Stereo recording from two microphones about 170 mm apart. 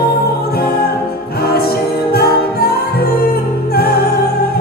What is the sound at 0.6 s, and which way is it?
Music, 65° left (ahead or behind).